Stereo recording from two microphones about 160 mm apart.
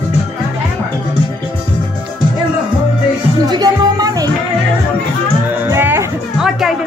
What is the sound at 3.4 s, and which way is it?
Music, 25° right (ahead or behind).